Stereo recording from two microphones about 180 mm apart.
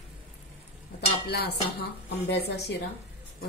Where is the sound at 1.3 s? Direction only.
65° left (ahead or behind).